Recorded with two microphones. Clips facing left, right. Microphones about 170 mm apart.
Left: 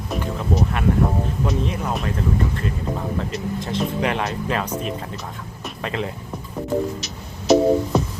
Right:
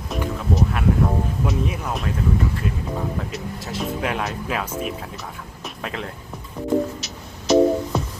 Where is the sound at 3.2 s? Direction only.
5° right (ahead or behind).